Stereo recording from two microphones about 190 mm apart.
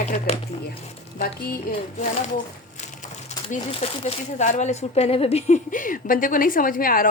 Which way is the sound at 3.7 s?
35° left (ahead or behind).